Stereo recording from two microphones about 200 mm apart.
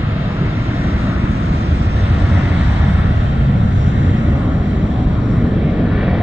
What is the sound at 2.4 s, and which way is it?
Vehicle, 10° right (ahead or behind).